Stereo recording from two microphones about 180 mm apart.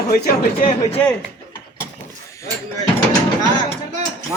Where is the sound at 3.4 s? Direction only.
20° left (ahead or behind).